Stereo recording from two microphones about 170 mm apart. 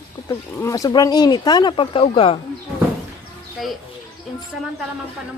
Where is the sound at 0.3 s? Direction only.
20° left (ahead or behind); by 2.4 s 35° left (ahead or behind).